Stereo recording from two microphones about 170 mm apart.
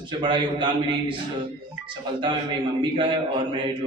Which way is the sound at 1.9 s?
25° right (ahead or behind).